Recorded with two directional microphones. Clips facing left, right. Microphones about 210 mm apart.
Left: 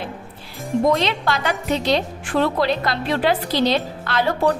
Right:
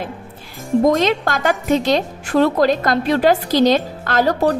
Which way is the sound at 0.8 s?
45° right (ahead or behind).